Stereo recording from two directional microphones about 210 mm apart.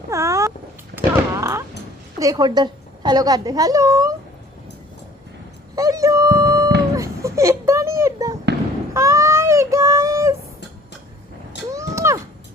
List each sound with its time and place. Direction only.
0.1 s cat: 15° right (ahead or behind)
0.9 s thunk: 15° right (ahead or behind)
2.1 s a woman's voice: 15° right (ahead or behind)
5.7 s wail: 15° right (ahead or behind)
6.9 s music: 15° right (ahead or behind)
8.9 s a sound: 15° right (ahead or behind)
11.7 s a sound: 15° right (ahead or behind)